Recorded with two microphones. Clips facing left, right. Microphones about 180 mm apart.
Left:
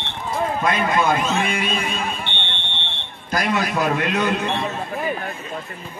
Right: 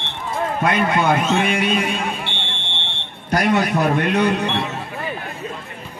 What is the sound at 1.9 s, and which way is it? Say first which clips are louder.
Fire alarm: right 2 dB; 10° right (ahead or behind).